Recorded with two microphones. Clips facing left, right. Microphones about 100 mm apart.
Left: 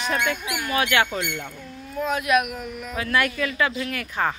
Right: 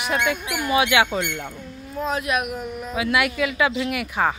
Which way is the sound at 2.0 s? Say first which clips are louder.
Left 2 dB; 30° right (ahead or behind).